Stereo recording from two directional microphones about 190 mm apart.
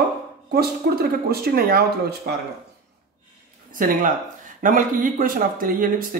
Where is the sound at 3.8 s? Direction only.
45° right (ahead or behind).